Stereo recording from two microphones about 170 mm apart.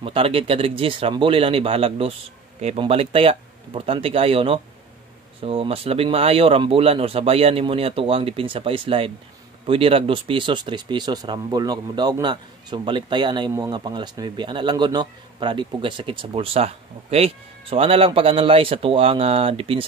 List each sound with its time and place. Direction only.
0.0 s speech: 30° right (ahead or behind)